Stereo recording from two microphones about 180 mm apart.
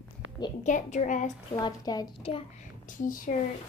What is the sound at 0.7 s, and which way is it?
Speech, 40° left (ahead or behind).